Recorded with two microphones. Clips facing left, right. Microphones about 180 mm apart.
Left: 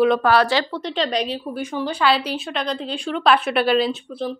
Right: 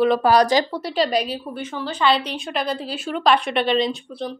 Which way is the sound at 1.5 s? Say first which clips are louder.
Left 3 dB; 15° left (ahead or behind).